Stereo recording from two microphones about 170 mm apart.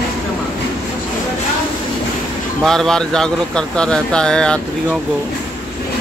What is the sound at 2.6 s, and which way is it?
Speech, 5° left (ahead or behind).